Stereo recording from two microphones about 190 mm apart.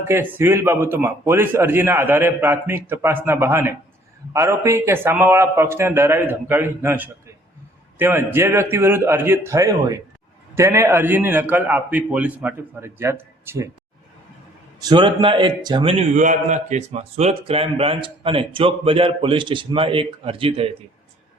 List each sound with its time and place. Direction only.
0.1 s a man's voice: 10° right (ahead or behind)
14.8 s a man's voice: 20° right (ahead or behind)